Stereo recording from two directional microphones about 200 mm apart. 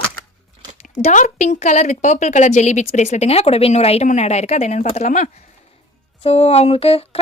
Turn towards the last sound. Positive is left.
turn(degrees=30)  # may be behind; listen again after turning